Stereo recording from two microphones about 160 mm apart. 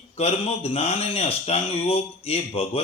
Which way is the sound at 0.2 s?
40° left (ahead or behind).